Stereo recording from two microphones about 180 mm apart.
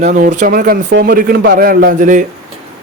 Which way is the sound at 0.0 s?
45° right (ahead or behind).